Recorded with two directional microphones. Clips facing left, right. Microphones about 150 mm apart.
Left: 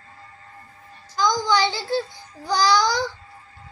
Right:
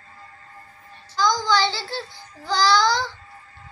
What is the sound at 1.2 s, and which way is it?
A child's voice, 15° left (ahead or behind).